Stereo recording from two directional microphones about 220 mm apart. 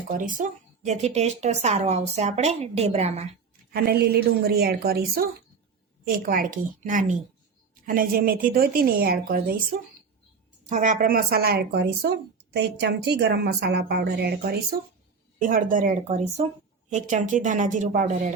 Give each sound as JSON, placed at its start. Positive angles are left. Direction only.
{"t": 0.1, "sound": "a woman's voice", "side_deg": -35}
{"t": 3.7, "sound": "a woman's voice", "side_deg": -45}